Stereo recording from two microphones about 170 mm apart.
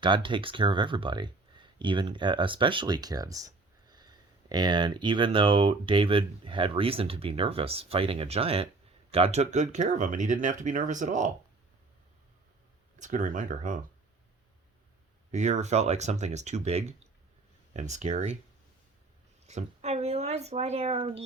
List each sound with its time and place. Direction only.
0.0 s speech: 30° right (ahead or behind); by 11.3 s 45° right (ahead or behind)
13.0 s speech: 50° right (ahead or behind)
15.3 s speech: 45° right (ahead or behind)
19.5 s speech: 40° right (ahead or behind)